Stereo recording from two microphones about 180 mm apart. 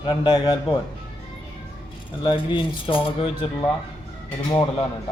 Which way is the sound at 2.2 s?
25° left (ahead or behind).